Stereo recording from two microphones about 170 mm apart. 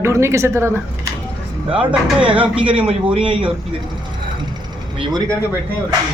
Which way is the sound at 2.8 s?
30° right (ahead or behind).